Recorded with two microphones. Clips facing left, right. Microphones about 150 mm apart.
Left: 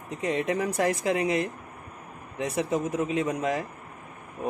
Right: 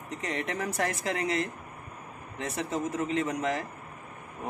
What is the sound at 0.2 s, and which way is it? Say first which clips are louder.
Speech: left 7 dB; 15° left (ahead or behind).